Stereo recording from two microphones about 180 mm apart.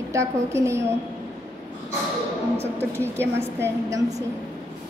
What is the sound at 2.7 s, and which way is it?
A woman's voice, 15° right (ahead or behind).